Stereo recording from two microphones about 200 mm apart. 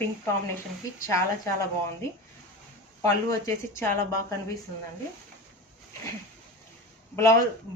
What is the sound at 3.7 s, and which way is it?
Speech, 10° left (ahead or behind).